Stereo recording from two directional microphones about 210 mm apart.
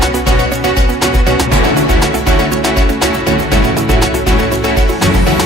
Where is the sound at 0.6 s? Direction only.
Centre (ahead or behind).